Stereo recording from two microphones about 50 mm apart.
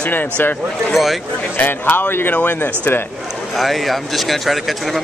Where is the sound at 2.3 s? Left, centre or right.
Left.